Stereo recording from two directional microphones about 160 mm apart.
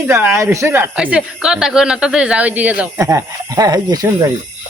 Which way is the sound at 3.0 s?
20° right (ahead or behind).